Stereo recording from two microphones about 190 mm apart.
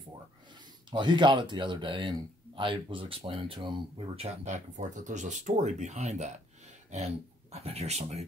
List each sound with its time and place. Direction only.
0.8 s speech: 25° right (ahead or behind)
7.5 s speech: 35° right (ahead or behind)